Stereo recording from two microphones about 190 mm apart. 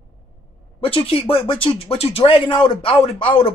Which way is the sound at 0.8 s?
30° left (ahead or behind).